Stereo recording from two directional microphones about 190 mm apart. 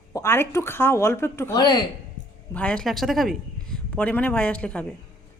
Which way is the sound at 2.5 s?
5° left (ahead or behind).